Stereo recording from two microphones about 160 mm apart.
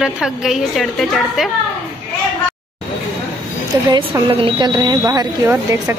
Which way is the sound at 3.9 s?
25° right (ahead or behind).